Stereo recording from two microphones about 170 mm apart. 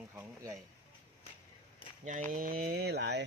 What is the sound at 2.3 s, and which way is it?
Speech, 55° right (ahead or behind).